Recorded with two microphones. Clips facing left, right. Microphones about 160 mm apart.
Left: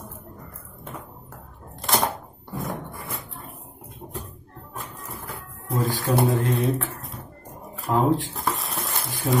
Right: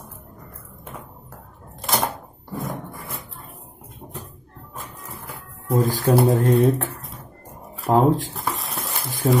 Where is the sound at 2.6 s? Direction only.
Centre (ahead or behind).